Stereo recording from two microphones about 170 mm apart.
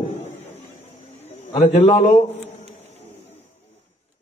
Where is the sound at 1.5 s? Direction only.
35° left (ahead or behind).